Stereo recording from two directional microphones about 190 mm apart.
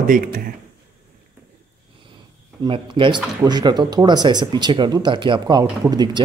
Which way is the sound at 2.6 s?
25° right (ahead or behind).